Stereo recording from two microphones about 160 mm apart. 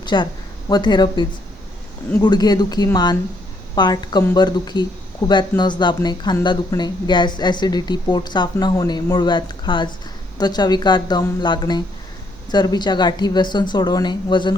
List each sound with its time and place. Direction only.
0.0 s speech: 30° left (ahead or behind)